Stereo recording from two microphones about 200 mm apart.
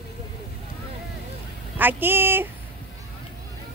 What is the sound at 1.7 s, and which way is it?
Speech, 10° right (ahead or behind).